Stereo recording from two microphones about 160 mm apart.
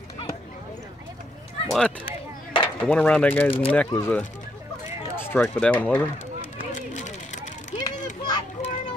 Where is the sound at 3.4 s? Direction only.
35° left (ahead or behind).